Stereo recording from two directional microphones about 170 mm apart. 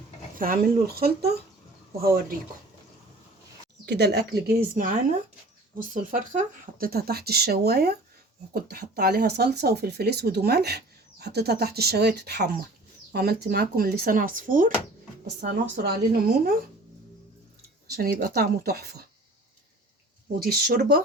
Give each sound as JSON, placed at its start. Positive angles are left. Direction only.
{"t": 0.3, "sound": "speech", "side_deg": -55}
{"t": 3.8, "sound": "speech", "side_deg": -75}
{"t": 15.4, "sound": "speech", "side_deg": -65}
{"t": 17.9, "sound": "speech", "side_deg": -60}
{"t": 20.4, "sound": "speech", "side_deg": -65}